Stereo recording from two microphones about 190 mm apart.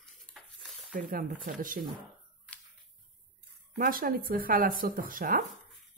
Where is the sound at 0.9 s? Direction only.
45° right (ahead or behind).